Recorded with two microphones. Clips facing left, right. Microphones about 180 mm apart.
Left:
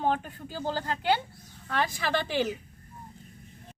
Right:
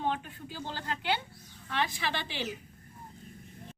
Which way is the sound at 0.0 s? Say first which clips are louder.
Left 5 dB; 40° left (ahead or behind).